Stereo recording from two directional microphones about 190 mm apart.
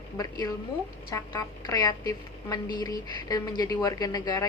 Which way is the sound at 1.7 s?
20° left (ahead or behind).